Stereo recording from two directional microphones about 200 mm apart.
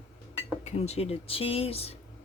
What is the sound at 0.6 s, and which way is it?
Speech, 30° left (ahead or behind).